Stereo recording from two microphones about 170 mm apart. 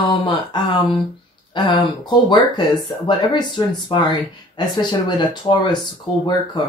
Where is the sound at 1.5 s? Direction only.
25° left (ahead or behind).